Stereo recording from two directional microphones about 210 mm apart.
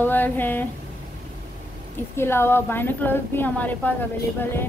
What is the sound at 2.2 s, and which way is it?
A woman's voice, 10° left (ahead or behind).